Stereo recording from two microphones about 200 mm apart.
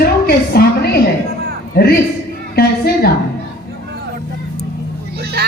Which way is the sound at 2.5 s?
50° left (ahead or behind).